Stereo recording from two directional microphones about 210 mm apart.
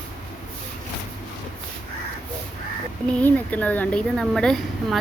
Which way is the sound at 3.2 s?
5° left (ahead or behind).